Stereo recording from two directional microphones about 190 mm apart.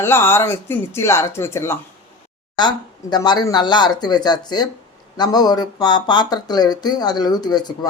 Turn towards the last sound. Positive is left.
turn(degrees=20)  # may be behind; listen again after turning